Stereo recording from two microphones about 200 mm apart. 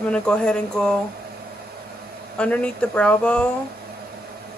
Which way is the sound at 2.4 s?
5° left (ahead or behind).